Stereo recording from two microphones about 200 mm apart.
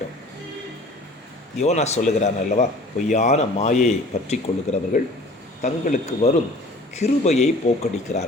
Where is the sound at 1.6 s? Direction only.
35° left (ahead or behind).